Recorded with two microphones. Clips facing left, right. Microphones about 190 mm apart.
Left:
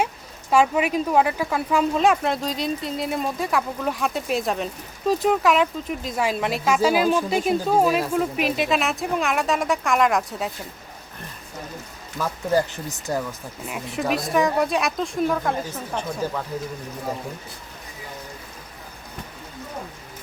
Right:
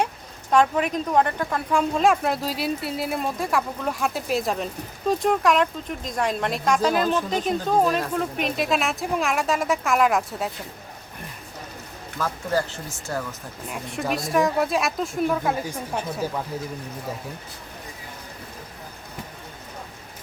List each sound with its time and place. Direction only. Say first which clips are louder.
0.5 s speech: left 1 dB; 5° left (ahead or behind)
12.2 s speech: left 3 dB; 15° left (ahead or behind)
13.7 s speech: left 2 dB; 5° left (ahead or behind)